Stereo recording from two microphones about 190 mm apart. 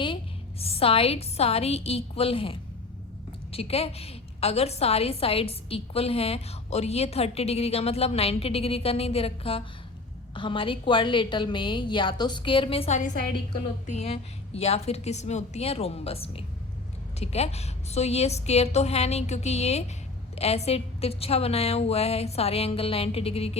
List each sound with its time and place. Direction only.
0.6 s a woman's voice: 30° left (ahead or behind)